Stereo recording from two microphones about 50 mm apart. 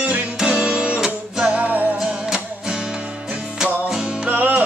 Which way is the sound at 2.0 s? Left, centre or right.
Centre.